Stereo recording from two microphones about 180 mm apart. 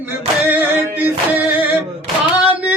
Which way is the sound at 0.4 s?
10° right (ahead or behind).